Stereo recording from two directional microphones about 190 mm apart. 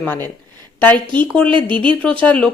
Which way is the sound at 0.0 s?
10° left (ahead or behind).